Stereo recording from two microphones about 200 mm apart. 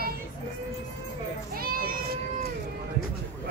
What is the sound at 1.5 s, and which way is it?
Children playing, 50° right (ahead or behind).